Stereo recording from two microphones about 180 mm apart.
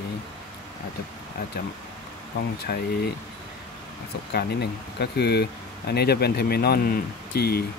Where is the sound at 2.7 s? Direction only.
60° left (ahead or behind).